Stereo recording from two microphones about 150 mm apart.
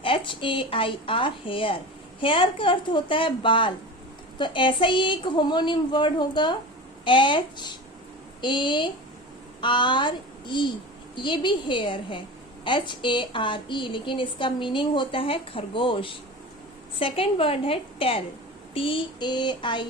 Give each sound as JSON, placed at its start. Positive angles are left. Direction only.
{"t": 0.0, "sound": "a woman's voice", "side_deg": 35}